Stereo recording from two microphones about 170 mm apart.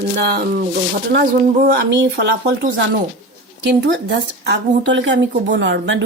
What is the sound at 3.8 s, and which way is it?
Speech, 90° right.